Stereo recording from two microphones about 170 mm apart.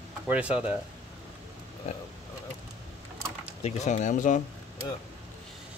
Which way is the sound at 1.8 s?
40° left (ahead or behind).